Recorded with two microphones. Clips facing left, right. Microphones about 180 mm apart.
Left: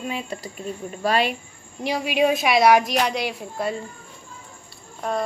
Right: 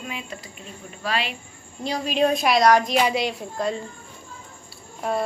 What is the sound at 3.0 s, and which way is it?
Child singing, centre (ahead or behind).